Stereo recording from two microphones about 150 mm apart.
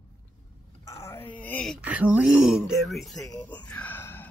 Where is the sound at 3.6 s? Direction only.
10° left (ahead or behind).